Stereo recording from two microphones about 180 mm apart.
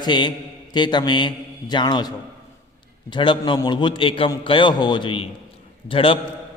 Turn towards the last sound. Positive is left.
turn(degrees=30)  # may be behind; listen again after turning